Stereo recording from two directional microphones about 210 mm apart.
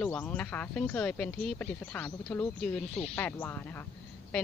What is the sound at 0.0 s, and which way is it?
Speech, 5° left (ahead or behind).